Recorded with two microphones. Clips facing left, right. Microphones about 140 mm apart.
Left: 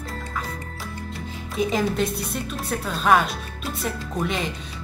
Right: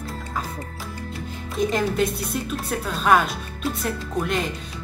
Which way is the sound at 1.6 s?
Centre (ahead or behind).